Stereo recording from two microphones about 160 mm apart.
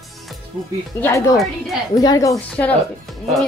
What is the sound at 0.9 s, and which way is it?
Speech, 15° left (ahead or behind).